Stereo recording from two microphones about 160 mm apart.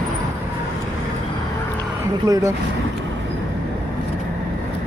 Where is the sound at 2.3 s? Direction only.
25° right (ahead or behind).